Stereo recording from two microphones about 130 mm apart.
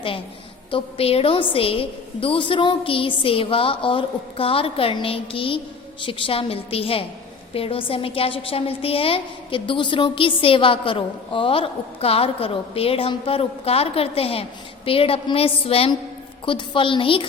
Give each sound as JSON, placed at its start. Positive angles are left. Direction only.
{"t": 0.7, "sound": "a woman's voice", "side_deg": 50}